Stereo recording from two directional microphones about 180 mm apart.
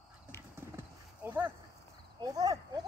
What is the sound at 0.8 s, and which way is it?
Horse, 10° right (ahead or behind).